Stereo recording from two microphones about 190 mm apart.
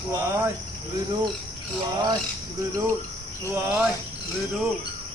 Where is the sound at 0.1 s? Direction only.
10° right (ahead or behind).